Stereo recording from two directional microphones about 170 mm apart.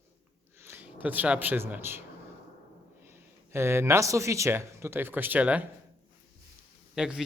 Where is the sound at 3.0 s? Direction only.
15° right (ahead or behind).